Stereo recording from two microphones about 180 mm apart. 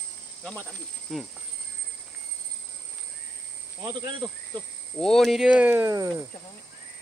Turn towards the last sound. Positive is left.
turn(degrees=-20)  # may be behind; listen again after turning